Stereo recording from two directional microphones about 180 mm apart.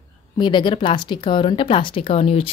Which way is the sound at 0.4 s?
25° left (ahead or behind).